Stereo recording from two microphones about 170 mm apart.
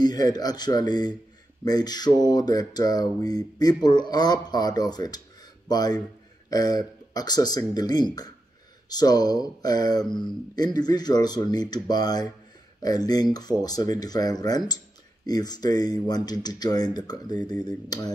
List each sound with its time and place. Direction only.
0.0 s speech: 25° left (ahead or behind)